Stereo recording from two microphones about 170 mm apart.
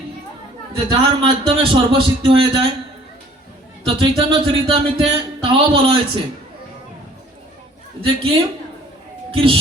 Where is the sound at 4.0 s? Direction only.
30° right (ahead or behind).